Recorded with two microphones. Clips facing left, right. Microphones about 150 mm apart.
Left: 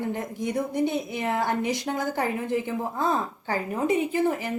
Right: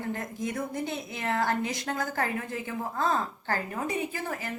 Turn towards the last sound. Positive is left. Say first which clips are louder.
# left 9 dB
turn(degrees=20)  # may be behind; listen again after turning